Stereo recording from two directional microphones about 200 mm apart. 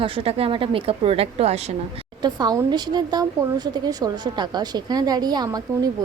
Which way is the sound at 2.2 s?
20° right (ahead or behind).